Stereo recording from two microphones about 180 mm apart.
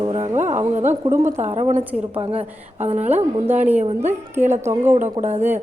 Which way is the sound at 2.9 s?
10° right (ahead or behind).